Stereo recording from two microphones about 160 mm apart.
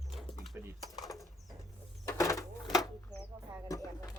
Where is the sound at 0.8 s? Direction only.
Centre (ahead or behind).